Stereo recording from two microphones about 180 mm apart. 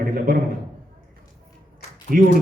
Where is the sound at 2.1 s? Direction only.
50° right (ahead or behind).